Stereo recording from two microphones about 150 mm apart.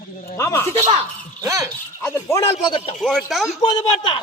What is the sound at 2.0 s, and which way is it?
Speech, 15° left (ahead or behind).